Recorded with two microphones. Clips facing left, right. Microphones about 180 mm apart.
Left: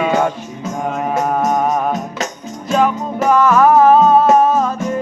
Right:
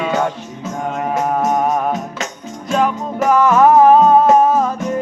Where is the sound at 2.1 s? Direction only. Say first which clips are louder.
Left 2 dB; 40° left (ahead or behind).